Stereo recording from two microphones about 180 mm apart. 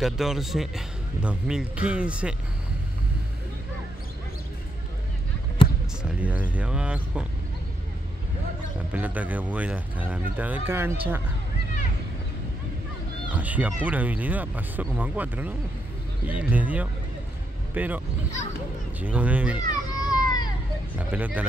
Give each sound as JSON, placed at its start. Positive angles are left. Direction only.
{"t": 0.0, "sound": "a man's voice", "side_deg": 0}
{"t": 6.0, "sound": "speech", "side_deg": -5}
{"t": 8.9, "sound": "speech", "side_deg": -10}
{"t": 13.3, "sound": "speech", "side_deg": -10}
{"t": 19.6, "sound": "a sound", "side_deg": 20}
{"t": 21.1, "sound": "speech", "side_deg": -10}